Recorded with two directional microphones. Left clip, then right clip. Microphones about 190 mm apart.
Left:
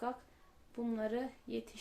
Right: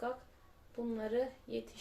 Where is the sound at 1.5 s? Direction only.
45° left (ahead or behind).